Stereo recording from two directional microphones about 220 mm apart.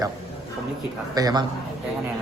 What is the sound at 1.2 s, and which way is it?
Speech, 15° right (ahead or behind).